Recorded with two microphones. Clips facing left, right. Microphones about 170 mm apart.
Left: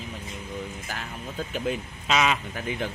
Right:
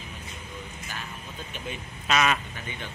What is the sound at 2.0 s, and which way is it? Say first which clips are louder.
Speech: left 1 dB; 15° left (ahead or behind).